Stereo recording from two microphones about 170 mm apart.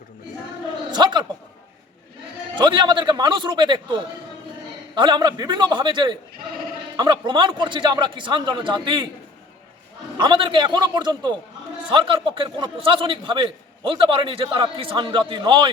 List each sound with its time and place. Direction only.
0.9 s a sound: 25° right (ahead or behind)
2.6 s a man's voice: 25° right (ahead or behind)
4.9 s a man's voice: 25° right (ahead or behind)
10.2 s a man's voice: 30° right (ahead or behind)